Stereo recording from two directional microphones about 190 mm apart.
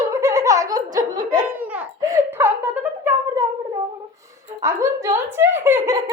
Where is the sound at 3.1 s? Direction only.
10° right (ahead or behind).